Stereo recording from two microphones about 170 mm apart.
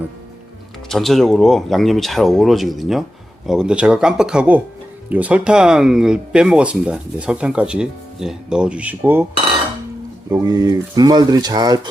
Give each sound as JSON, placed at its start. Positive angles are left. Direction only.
{"t": 0.9, "sound": "speech", "side_deg": 0}
{"t": 10.4, "sound": "speech", "side_deg": -20}